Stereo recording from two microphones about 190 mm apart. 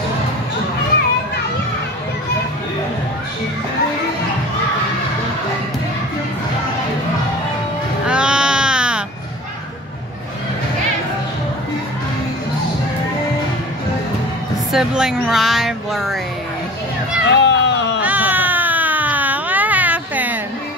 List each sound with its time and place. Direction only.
8.1 s baby cry: 5° right (ahead or behind)
14.7 s speech: 5° right (ahead or behind)
17.3 s a sound: 70° left (ahead or behind)
18.0 s baby cry: 10° right (ahead or behind)